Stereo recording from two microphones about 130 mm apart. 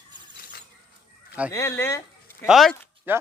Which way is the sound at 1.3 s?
10° right (ahead or behind).